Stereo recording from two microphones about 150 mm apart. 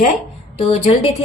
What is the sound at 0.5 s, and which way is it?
Speech, 40° left (ahead or behind).